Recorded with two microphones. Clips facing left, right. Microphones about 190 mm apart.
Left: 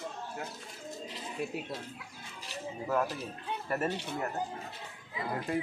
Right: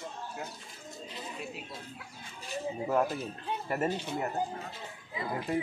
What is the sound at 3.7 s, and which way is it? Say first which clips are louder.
Speech: right 1 dB; 10° right (ahead or behind).